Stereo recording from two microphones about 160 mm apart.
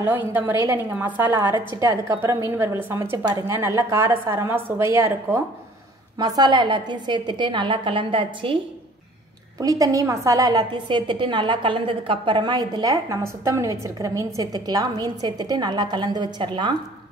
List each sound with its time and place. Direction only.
0.0 s a woman's voice: 10° right (ahead or behind)
6.1 s a woman's voice: 25° right (ahead or behind)
9.6 s a woman's voice: 20° right (ahead or behind)